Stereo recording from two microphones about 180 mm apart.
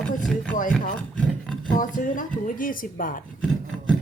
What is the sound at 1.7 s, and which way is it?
A woman's voice, 45° left (ahead or behind).